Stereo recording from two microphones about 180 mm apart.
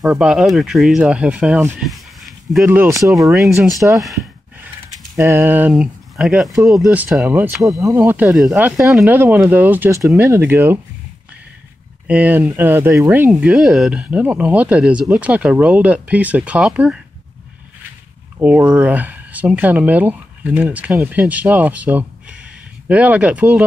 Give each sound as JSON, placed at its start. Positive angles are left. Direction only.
{"t": 0.0, "sound": "speech", "side_deg": -5}
{"t": 2.6, "sound": "speech", "side_deg": -10}
{"t": 3.8, "sound": "speech", "side_deg": -10}
{"t": 5.1, "sound": "speech", "side_deg": -15}
{"t": 7.5, "sound": "speech", "side_deg": 0}
{"t": 7.8, "sound": "speech", "side_deg": -10}
{"t": 12.1, "sound": "speech", "side_deg": -10}
{"t": 18.4, "sound": "speech", "side_deg": -5}